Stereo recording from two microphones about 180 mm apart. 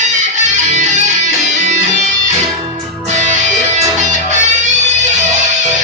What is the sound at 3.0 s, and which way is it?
Music, 45° right (ahead or behind).